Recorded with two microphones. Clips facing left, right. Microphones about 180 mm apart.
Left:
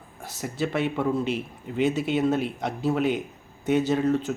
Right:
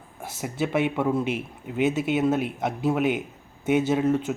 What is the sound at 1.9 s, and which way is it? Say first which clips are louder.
Speech: right 1 dB; 45° right (ahead or behind).